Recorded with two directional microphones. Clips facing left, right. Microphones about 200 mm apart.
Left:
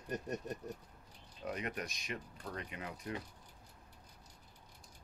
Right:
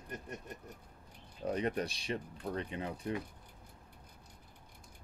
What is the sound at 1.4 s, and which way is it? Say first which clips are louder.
Speech: right 7 dB; 30° right (ahead or behind).